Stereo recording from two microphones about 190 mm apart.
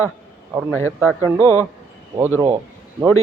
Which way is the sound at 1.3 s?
10° right (ahead or behind).